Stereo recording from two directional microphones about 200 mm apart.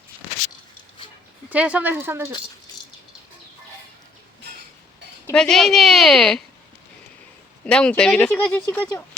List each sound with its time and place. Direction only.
1.5 s speech: 5° right (ahead or behind)
5.2 s speech: 5° left (ahead or behind)
7.6 s speech: 5° left (ahead or behind)